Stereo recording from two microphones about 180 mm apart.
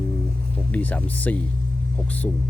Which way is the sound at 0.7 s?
10° left (ahead or behind).